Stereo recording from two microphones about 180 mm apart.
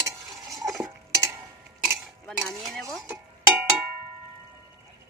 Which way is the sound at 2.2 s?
5° left (ahead or behind).